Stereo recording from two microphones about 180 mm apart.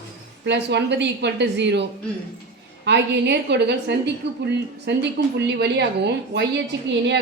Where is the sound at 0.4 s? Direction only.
75° right (ahead or behind).